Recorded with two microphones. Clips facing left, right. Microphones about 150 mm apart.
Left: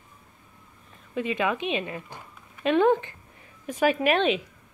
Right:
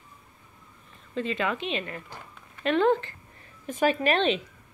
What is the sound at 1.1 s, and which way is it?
Speech, 10° left (ahead or behind).